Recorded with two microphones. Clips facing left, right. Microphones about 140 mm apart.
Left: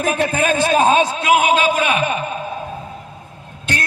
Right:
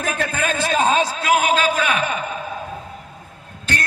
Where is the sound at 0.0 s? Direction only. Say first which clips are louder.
Left 5 dB; 20° left (ahead or behind).